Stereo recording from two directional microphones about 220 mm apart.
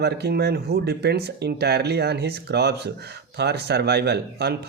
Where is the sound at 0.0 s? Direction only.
50° right (ahead or behind).